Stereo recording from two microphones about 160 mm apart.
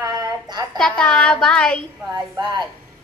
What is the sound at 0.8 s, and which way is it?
A woman's voice, 5° left (ahead or behind).